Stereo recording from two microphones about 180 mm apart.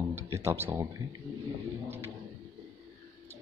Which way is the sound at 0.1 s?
15° right (ahead or behind).